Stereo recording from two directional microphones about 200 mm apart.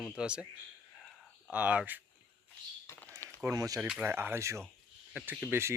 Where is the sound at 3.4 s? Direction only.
15° right (ahead or behind).